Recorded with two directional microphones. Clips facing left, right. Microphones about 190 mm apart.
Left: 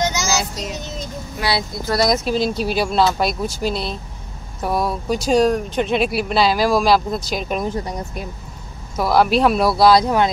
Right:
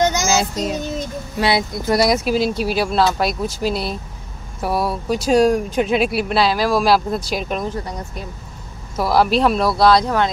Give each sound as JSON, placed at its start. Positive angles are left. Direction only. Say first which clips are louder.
{"t": 0.0, "sound": "child singing", "louder": "right 4 dB", "side_deg": -55}
{"t": 1.4, "sound": "speech", "louder": "right 4 dB", "side_deg": -20}
{"t": 8.9, "sound": "speech", "louder": "even", "side_deg": 0}